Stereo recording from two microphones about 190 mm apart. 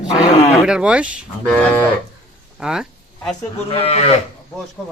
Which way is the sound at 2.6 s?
5° right (ahead or behind).